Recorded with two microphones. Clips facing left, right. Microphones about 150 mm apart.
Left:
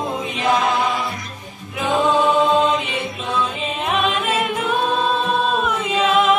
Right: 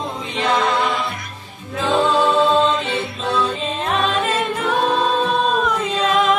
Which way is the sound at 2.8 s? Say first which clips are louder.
Right 3 dB; 80° right.